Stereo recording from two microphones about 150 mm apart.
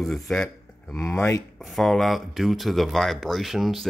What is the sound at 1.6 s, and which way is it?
Speech, centre (ahead or behind).